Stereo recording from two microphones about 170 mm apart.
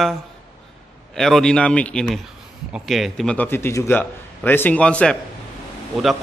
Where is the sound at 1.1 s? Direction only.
5° left (ahead or behind).